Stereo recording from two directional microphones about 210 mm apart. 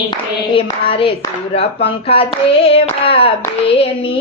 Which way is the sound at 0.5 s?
25° left (ahead or behind).